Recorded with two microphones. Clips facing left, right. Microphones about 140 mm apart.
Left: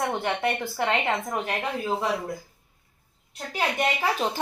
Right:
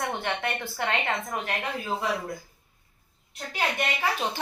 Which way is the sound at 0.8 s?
35° left (ahead or behind).